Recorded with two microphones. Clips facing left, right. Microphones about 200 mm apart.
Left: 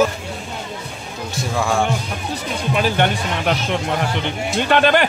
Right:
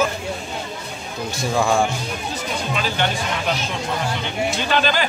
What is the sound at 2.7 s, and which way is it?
Speech, 55° left (ahead or behind).